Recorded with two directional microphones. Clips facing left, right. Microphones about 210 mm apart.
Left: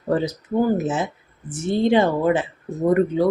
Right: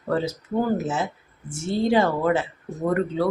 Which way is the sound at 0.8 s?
20° left (ahead or behind).